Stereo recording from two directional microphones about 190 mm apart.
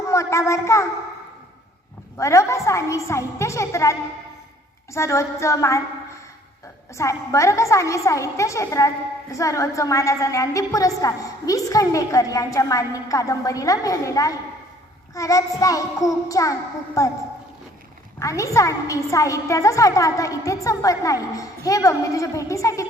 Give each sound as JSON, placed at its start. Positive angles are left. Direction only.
{"t": 0.1, "sound": "a child's voice", "side_deg": 15}
{"t": 2.1, "sound": "a woman's voice", "side_deg": 15}
{"t": 4.9, "sound": "a woman's voice", "side_deg": 15}
{"t": 6.9, "sound": "a woman's voice", "side_deg": 15}
{"t": 18.2, "sound": "a woman's voice", "side_deg": 15}